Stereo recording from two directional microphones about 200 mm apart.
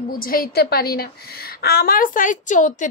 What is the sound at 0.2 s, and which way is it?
A woman's voice, 45° left (ahead or behind).